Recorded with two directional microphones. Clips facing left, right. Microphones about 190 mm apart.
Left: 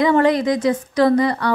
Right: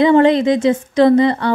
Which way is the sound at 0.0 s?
25° right (ahead or behind).